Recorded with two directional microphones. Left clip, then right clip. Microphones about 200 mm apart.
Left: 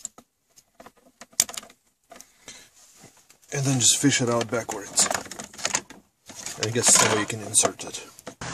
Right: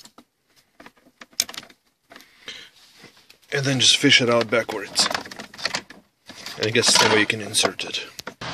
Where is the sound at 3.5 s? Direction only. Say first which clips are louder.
Right 6 dB; 5° left (ahead or behind).